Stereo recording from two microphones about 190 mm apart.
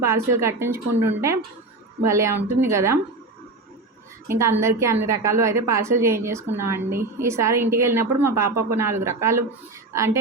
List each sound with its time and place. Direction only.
0.0 s a woman's voice: 15° right (ahead or behind)
4.3 s a woman's voice: 15° right (ahead or behind)